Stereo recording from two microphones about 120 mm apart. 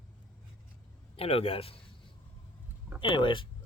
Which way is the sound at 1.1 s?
55° left (ahead or behind).